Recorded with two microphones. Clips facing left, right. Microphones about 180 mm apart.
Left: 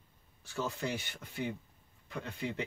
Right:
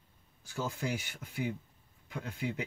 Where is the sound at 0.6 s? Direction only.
10° right (ahead or behind).